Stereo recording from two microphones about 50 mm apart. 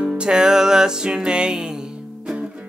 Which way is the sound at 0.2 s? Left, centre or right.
Centre.